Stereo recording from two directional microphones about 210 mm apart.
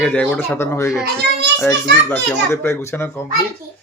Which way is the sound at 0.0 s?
5° left (ahead or behind).